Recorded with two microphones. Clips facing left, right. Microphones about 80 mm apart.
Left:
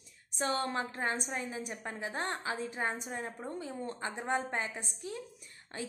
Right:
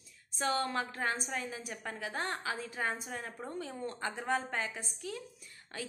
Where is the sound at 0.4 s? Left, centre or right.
Left.